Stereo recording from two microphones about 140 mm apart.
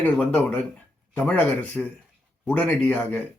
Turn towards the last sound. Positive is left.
turn(degrees=10)  # may be behind; listen again after turning